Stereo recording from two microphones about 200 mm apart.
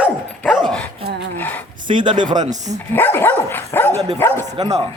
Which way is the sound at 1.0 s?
55° right (ahead or behind).